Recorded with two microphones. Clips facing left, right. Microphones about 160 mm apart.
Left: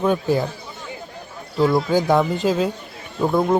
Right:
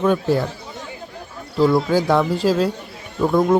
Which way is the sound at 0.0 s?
5° left (ahead or behind).